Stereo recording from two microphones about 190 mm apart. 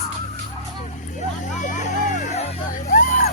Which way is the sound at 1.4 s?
40° left (ahead or behind).